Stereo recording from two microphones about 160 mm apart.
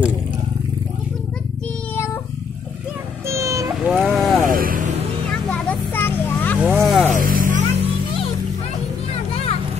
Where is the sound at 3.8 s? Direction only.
Centre (ahead or behind).